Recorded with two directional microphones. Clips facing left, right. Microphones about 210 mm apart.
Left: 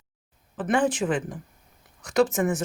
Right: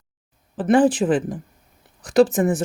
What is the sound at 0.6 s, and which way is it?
Speech, 35° right (ahead or behind).